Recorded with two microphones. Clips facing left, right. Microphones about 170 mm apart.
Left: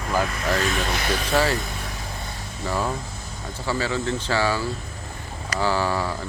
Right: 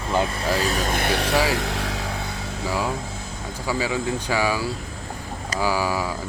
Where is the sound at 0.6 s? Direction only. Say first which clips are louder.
Right 2 dB; 40° right (ahead or behind); by 1.4 s 70° right (ahead or behind).